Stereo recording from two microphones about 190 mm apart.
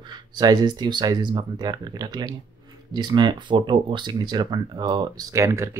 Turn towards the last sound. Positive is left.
turn(degrees=-15)  # may be behind; listen again after turning